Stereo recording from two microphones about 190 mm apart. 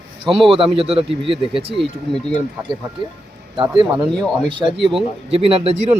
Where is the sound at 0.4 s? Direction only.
30° right (ahead or behind).